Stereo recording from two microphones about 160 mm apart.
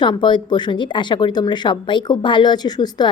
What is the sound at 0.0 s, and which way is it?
Speech, 30° left (ahead or behind).